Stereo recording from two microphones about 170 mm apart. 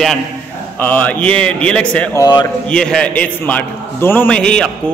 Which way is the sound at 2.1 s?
25° left (ahead or behind).